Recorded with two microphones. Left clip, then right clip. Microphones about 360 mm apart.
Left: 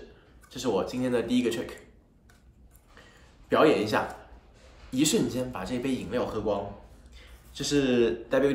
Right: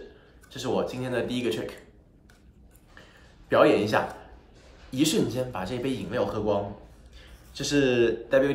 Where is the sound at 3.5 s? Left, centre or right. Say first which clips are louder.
Right 2 dB; centre.